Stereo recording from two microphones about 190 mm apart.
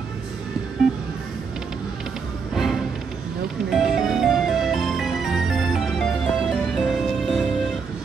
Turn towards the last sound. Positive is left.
turn(degrees=0)  # may be behind; listen again after turning